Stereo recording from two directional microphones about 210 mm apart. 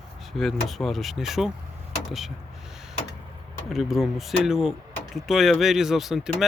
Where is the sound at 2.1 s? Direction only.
Centre (ahead or behind).